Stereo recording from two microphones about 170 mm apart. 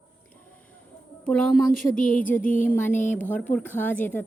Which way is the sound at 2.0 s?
50° left (ahead or behind).